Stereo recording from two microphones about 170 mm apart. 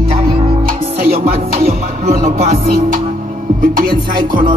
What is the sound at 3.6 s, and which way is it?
Music, 55° right (ahead or behind).